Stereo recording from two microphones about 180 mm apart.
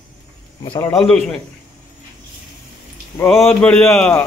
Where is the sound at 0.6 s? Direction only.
15° left (ahead or behind).